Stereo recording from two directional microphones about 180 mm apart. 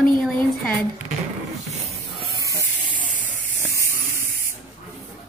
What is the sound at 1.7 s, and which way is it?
Music, 35° right (ahead or behind).